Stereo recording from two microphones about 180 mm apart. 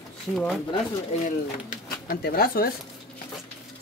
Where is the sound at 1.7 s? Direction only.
50° left (ahead or behind).